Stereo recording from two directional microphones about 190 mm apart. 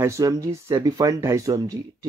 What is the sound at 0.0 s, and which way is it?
Speech, 15° right (ahead or behind).